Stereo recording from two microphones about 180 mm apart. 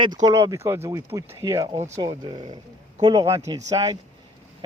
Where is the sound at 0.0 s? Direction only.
20° right (ahead or behind).